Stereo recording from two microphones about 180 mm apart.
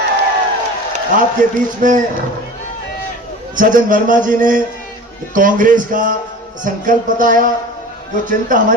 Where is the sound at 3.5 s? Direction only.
45° right (ahead or behind).